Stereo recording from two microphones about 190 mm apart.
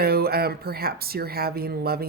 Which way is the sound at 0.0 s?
55° right (ahead or behind).